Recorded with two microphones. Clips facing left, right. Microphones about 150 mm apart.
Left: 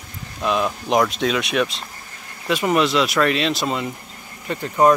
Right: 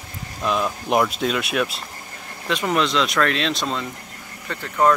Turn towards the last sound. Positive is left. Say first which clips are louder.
# left 3 dB
turn(degrees=20)  # may be behind; listen again after turning